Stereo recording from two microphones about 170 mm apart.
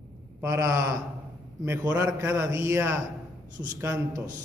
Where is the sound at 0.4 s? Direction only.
15° right (ahead or behind).